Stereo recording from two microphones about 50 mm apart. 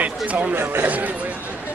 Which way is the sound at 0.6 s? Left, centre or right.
Right.